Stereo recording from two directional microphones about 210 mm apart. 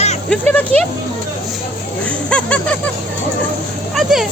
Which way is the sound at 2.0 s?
5° left (ahead or behind).